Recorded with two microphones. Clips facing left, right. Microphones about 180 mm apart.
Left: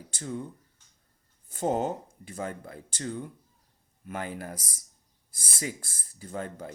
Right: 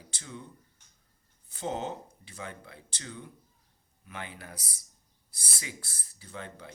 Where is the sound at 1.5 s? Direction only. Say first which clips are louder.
Left 6 dB; 45° left (ahead or behind).